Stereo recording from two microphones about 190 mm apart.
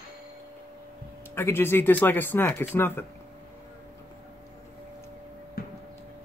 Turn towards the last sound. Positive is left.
turn(degrees=50)  # may be behind; listen again after turning